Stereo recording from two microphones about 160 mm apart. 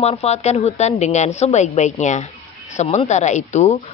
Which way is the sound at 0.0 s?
40° left (ahead or behind).